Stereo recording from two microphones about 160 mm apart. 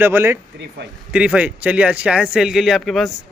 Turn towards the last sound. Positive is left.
turn(degrees=0)  # may be behind; listen again after turning